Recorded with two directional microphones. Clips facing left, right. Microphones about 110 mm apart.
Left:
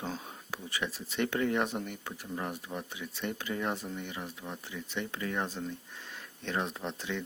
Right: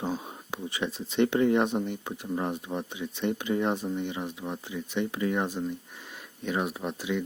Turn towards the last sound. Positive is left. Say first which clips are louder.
# right 6 dB
turn(degrees=-10)  # may be behind; listen again after turning